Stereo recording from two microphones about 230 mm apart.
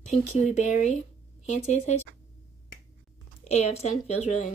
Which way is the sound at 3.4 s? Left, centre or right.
Left.